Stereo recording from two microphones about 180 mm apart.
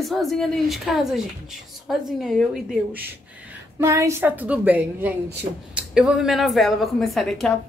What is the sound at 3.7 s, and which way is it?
A woman's voice, 15° right (ahead or behind).